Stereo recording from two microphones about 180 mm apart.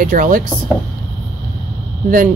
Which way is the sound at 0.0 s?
50° right (ahead or behind).